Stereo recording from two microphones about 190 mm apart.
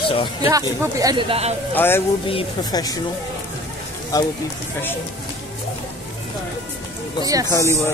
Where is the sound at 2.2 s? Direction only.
25° left (ahead or behind).